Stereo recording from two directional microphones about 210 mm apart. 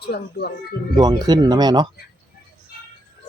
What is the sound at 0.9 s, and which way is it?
Speech, 20° right (ahead or behind).